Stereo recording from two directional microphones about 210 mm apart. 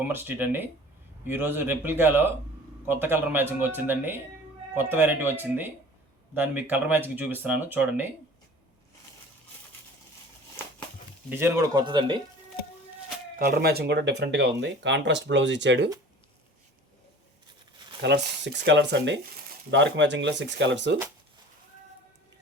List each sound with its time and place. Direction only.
0.1 s speech: 10° right (ahead or behind)
11.3 s speech: 10° right (ahead or behind)
13.4 s speech: 45° right (ahead or behind)
18.0 s speech: 55° right (ahead or behind)